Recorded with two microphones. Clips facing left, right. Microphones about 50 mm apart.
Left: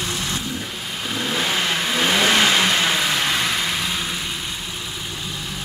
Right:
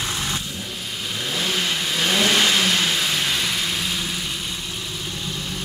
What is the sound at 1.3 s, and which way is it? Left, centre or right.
Vehicle, left.